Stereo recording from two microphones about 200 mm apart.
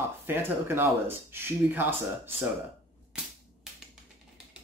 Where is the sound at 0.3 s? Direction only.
10° right (ahead or behind).